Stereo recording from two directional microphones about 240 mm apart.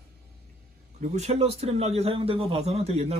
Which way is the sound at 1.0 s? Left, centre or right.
Right.